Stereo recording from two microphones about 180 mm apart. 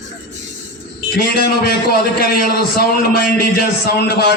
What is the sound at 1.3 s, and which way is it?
A man's voice, 65° left (ahead or behind).